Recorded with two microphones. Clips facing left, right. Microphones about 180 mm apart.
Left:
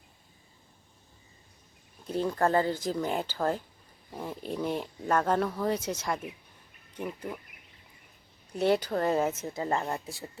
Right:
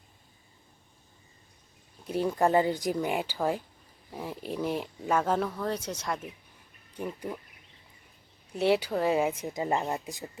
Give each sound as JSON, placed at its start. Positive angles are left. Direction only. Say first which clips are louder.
{"t": 2.0, "sound": "speech", "louder": "right 1 dB", "side_deg": -10}
{"t": 8.5, "sound": "speech", "louder": "even", "side_deg": -5}